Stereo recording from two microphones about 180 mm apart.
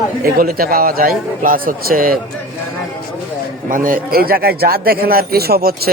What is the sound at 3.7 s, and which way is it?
A man's voice, 50° right (ahead or behind).